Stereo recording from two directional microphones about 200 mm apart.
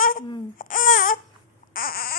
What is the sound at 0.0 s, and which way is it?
Baby cry, 45° left (ahead or behind).